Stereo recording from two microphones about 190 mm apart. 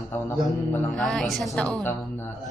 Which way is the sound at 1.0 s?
Centre (ahead or behind).